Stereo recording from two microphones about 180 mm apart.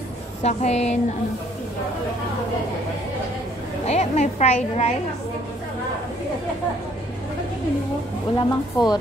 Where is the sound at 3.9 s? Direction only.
40° left (ahead or behind).